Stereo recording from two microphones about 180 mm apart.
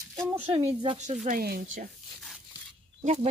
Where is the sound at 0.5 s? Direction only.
30° right (ahead or behind).